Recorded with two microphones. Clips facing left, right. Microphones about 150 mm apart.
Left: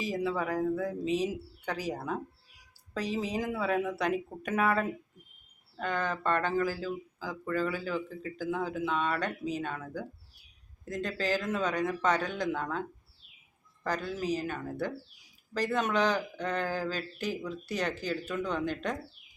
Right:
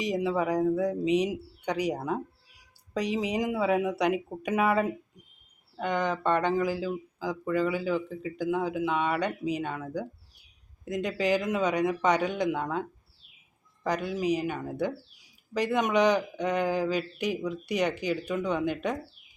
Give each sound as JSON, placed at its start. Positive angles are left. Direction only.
{"t": 0.0, "sound": "speech", "side_deg": -20}
{"t": 13.8, "sound": "speech", "side_deg": -15}